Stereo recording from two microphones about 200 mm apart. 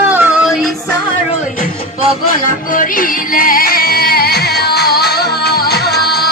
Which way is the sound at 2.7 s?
45° left (ahead or behind).